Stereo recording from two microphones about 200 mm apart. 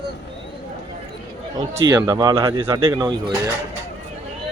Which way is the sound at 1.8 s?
20° right (ahead or behind).